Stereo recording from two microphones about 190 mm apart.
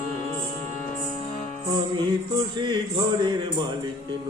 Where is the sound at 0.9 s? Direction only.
35° left (ahead or behind).